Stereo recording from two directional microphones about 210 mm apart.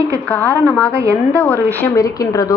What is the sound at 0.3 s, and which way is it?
A woman's voice, 5° left (ahead or behind).